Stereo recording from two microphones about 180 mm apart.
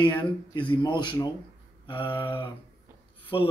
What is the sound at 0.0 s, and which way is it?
Speech, 25° left (ahead or behind).